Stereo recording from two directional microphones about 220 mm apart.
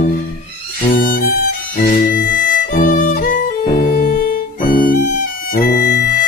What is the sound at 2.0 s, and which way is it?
Violin, 40° left (ahead or behind).